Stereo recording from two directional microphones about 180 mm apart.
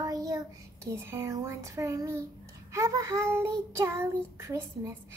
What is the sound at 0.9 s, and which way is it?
Child singing, 15° right (ahead or behind).